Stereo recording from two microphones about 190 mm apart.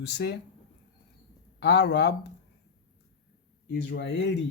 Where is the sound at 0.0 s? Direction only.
65° left (ahead or behind).